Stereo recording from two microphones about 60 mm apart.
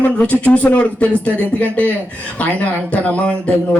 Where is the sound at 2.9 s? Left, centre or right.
Left.